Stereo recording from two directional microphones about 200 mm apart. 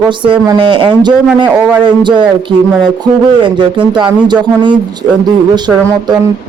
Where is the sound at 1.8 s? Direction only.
25° right (ahead or behind).